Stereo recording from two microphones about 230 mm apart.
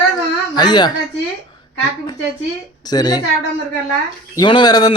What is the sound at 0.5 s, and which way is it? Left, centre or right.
Speech, centre.